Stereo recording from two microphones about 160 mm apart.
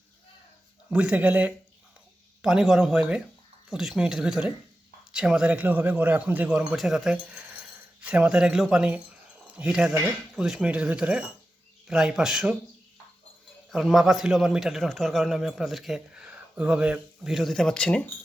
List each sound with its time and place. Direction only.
0.9 s a man's voice: 10° right (ahead or behind)
13.7 s a man's voice: centre (ahead or behind)